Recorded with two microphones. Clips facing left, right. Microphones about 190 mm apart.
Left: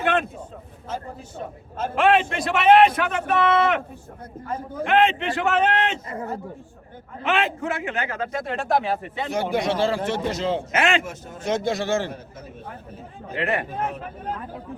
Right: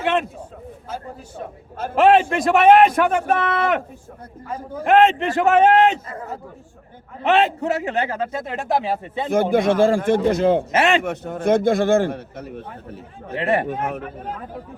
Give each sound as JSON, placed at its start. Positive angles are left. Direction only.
{"t": 2.0, "sound": "a man's voice", "side_deg": -40}
{"t": 7.2, "sound": "a man's voice", "side_deg": -35}
{"t": 8.6, "sound": "speech", "side_deg": -20}
{"t": 9.3, "sound": "a man's voice", "side_deg": -50}
{"t": 10.7, "sound": "a man's voice", "side_deg": -35}
{"t": 11.0, "sound": "a man's voice", "side_deg": -60}
{"t": 13.4, "sound": "a man's voice", "side_deg": -35}
{"t": 13.7, "sound": "a man's voice", "side_deg": -65}